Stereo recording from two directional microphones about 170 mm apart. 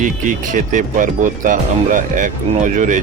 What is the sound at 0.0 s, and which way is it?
Speech, 50° right (ahead or behind).